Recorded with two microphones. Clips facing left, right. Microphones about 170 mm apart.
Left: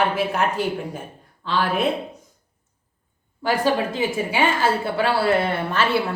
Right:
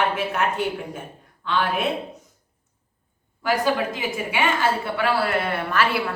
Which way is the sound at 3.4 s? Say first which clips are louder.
Left 1 dB; 30° left (ahead or behind).